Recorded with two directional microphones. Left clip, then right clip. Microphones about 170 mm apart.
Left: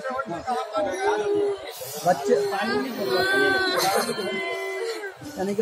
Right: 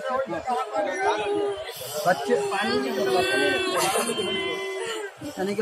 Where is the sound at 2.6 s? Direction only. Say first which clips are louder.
Right 2 dB; 15° left (ahead or behind).